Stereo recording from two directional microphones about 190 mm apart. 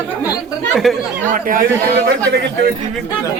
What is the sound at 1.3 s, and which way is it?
Speech, 45° right (ahead or behind).